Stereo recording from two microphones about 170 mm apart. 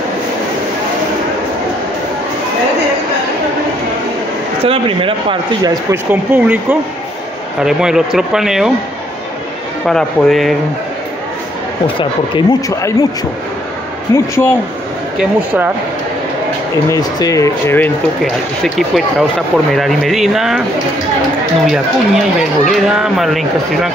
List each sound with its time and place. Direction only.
4.6 s speech: 30° right (ahead or behind)
5.9 s speech: 10° right (ahead or behind)
9.8 s speech: centre (ahead or behind)
12.0 s speech: 25° left (ahead or behind)
14.1 s a man's voice: 15° left (ahead or behind)
15.1 s speech: 10° right (ahead or behind)
16.9 s speech: 20° left (ahead or behind)
18.8 s speech: centre (ahead or behind)
21.6 s speech: 5° right (ahead or behind)